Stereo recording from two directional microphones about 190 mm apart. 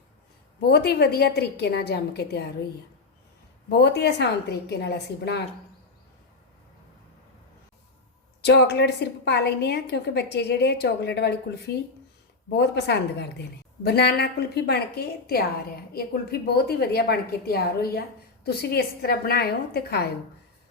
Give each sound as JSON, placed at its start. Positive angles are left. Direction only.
{"t": 0.7, "sound": "a woman's voice", "side_deg": 60}
{"t": 3.7, "sound": "a woman's voice", "side_deg": 60}
{"t": 8.4, "sound": "a woman's voice", "side_deg": 60}